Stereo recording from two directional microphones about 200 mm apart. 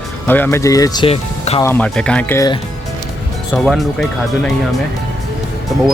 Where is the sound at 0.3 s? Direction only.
10° left (ahead or behind); by 1.6 s 30° left (ahead or behind).